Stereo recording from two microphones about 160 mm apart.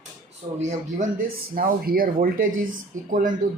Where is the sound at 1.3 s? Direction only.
65° right (ahead or behind).